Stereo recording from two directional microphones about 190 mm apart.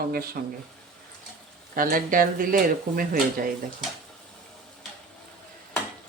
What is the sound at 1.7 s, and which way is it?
Speech, 45° right (ahead or behind).